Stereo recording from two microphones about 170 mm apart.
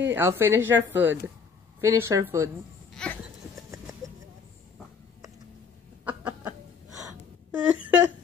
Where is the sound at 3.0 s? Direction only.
5° left (ahead or behind).